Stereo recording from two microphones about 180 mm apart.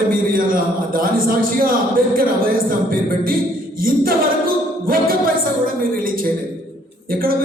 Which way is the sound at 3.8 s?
55° right (ahead or behind).